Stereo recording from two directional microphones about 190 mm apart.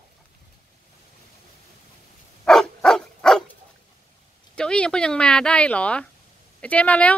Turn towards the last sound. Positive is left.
turn(degrees=5)  # may be behind; listen again after turning